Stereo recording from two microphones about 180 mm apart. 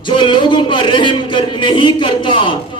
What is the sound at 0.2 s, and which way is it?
Speech, 25° left (ahead or behind).